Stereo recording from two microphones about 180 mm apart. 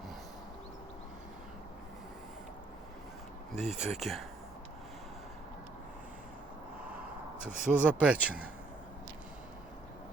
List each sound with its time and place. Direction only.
3.5 s speech: 40° right (ahead or behind)
4.0 s speech: centre (ahead or behind)
7.6 s speech: 5° right (ahead or behind)